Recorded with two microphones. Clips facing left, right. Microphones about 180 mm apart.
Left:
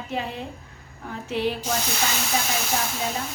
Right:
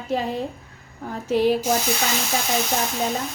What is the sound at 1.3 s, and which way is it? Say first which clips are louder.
Speech: right 6 dB; 40° right (ahead or behind).